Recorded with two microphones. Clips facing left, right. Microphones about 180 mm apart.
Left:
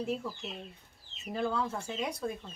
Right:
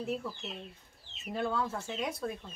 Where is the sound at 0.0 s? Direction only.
Centre (ahead or behind).